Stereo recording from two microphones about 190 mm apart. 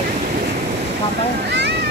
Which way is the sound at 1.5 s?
65° right (ahead or behind).